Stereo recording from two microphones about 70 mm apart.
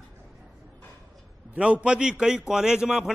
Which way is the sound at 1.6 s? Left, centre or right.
Centre.